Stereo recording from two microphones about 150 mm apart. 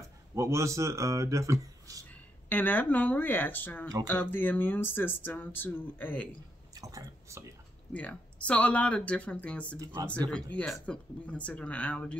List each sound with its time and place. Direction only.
0.0 s speech: 20° right (ahead or behind)
2.0 s speech: 10° left (ahead or behind)
6.7 s speech: 25° right (ahead or behind)
7.9 s speech: 10° left (ahead or behind)